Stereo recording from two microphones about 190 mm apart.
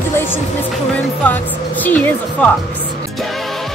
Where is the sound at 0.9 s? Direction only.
10° left (ahead or behind).